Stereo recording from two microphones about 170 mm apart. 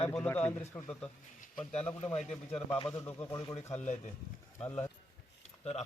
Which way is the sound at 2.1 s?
35° left (ahead or behind).